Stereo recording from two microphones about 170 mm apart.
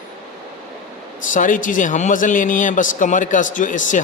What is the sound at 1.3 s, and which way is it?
A man's voice, 50° left (ahead or behind).